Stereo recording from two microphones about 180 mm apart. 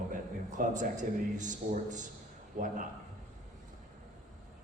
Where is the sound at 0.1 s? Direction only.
45° right (ahead or behind).